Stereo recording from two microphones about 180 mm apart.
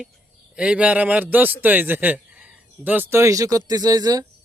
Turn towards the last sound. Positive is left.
turn(degrees=-20)  # may be behind; listen again after turning